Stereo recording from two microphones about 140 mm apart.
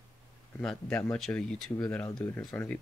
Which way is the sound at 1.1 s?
5° left (ahead or behind).